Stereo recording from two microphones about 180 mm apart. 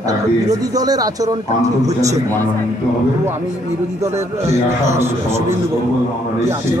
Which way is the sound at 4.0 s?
15° right (ahead or behind).